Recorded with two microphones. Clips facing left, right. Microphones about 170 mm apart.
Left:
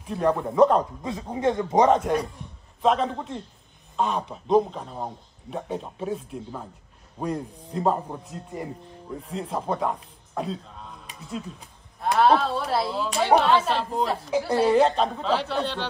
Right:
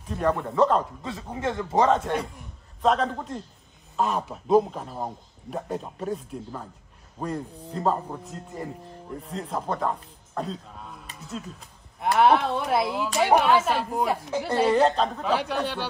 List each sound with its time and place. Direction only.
0.1 s a man's voice: 5° left (ahead or behind)
2.8 s a man's voice: centre (ahead or behind)
12.0 s a woman's voice: 15° right (ahead or behind)
14.5 s a man's voice: centre (ahead or behind)
15.2 s a woman's voice: 10° right (ahead or behind)